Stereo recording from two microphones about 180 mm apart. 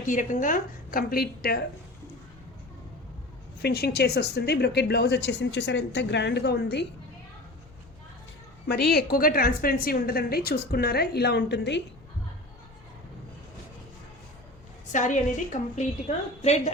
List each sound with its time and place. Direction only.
0.0 s a woman's voice: 45° left (ahead or behind)
3.6 s speech: 60° left (ahead or behind)
8.6 s speech: 65° left (ahead or behind)
14.9 s a woman's voice: 45° left (ahead or behind)